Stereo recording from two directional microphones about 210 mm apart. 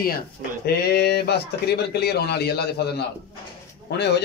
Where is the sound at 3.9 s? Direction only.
50° left (ahead or behind).